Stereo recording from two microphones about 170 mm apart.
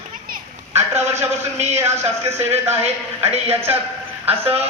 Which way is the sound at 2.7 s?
40° right (ahead or behind).